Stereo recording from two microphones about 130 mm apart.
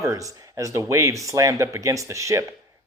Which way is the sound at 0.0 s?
25° right (ahead or behind).